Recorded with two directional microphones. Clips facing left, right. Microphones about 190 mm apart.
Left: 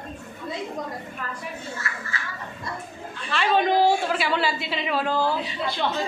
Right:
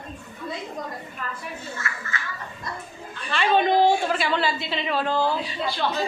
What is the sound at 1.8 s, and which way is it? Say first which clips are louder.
Speech: right 1 dB; 35° left (ahead or behind).